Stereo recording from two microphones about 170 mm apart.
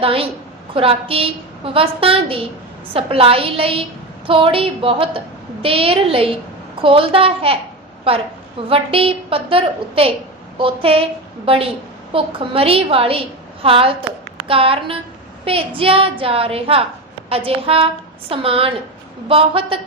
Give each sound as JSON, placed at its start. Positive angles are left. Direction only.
{"t": 0.0, "sound": "a woman's voice", "side_deg": -35}
{"t": 8.7, "sound": "a woman's voice", "side_deg": -35}